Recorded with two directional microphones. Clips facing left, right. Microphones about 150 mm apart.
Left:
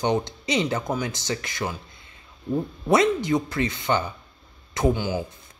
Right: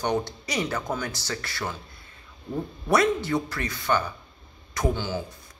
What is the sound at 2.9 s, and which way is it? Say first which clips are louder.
Speech: left 2 dB; 20° left (ahead or behind).